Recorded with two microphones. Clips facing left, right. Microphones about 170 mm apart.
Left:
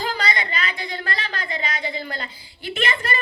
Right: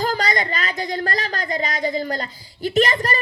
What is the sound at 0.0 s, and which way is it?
A woman's voice, 45° right (ahead or behind).